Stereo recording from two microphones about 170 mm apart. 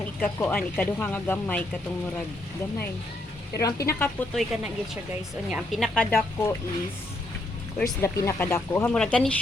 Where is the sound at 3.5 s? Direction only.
20° left (ahead or behind).